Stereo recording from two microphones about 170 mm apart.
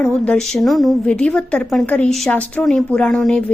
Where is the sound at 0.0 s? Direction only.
5° left (ahead or behind).